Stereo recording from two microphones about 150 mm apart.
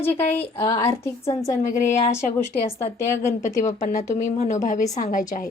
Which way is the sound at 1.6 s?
50° left (ahead or behind).